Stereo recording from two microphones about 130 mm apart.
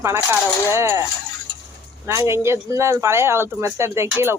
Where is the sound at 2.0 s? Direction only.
20° right (ahead or behind).